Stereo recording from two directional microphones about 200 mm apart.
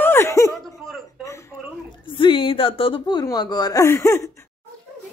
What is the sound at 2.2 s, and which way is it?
Speech, 25° left (ahead or behind).